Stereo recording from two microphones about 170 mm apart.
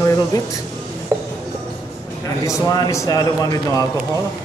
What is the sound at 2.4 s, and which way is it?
A man's voice, 20° left (ahead or behind).